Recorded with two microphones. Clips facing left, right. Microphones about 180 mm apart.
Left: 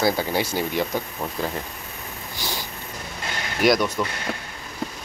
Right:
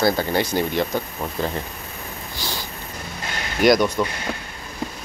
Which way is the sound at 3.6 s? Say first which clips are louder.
Right 3 dB; centre (ahead or behind).